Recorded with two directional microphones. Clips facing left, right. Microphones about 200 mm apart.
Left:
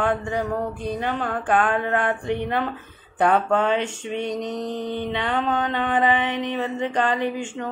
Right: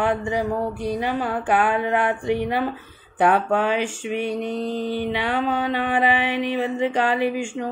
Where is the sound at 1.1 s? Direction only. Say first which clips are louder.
Left 1 dB; 10° right (ahead or behind).